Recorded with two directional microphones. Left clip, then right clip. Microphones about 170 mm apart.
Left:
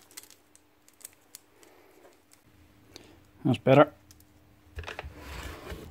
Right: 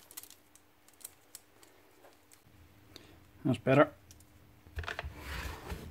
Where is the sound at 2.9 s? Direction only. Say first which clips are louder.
Left 4 dB; 25° left (ahead or behind).